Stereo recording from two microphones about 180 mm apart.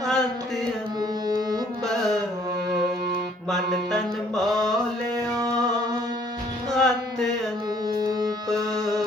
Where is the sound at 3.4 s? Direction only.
Centre (ahead or behind).